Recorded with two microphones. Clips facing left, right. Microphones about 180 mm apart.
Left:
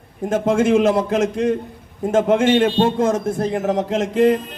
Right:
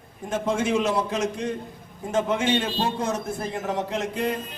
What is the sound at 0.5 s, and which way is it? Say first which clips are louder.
Speech: left 8 dB; 50° left (ahead or behind).